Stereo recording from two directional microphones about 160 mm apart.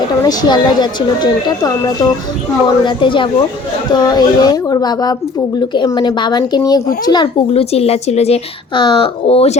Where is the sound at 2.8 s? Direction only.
30° left (ahead or behind).